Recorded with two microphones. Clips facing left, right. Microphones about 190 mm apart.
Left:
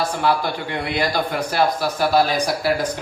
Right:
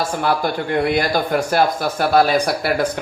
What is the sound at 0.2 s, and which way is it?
Speech, 50° right (ahead or behind).